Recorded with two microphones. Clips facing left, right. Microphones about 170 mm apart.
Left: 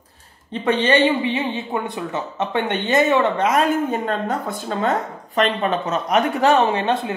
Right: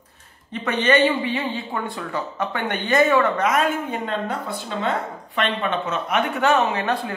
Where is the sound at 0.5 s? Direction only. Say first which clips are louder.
Left 2 dB; 30° left (ahead or behind).